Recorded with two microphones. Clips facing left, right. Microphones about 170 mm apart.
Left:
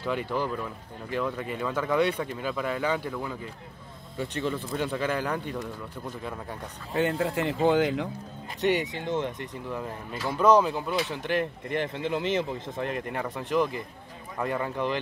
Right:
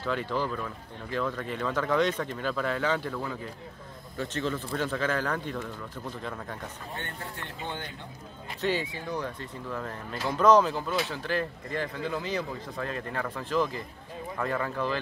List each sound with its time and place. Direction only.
0.0 s speech: 15° left (ahead or behind)
6.9 s speech: 90° left
8.5 s speech: 20° left (ahead or behind)